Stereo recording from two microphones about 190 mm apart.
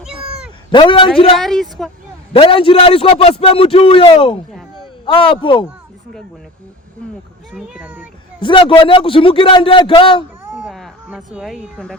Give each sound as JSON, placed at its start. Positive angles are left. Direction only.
{"t": 0.0, "sound": "cat", "side_deg": -5}
{"t": 0.7, "sound": "a man's voice", "side_deg": 25}
{"t": 1.4, "sound": "a woman's voice", "side_deg": 0}
{"t": 2.3, "sound": "a man's voice", "side_deg": 30}
{"t": 7.5, "sound": "a woman's voice", "side_deg": -5}
{"t": 8.4, "sound": "a man's voice", "side_deg": 25}
{"t": 10.5, "sound": "a sound", "side_deg": -5}